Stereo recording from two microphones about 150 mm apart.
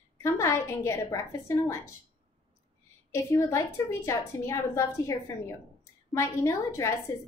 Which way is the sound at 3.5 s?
20° left (ahead or behind).